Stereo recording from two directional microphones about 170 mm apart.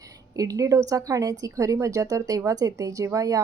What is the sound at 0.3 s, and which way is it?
A woman's voice, 20° right (ahead or behind).